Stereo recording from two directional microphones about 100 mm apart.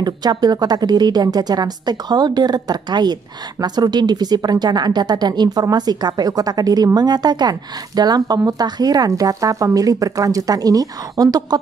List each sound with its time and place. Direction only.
0.0 s a woman's voice: 45° right (ahead or behind)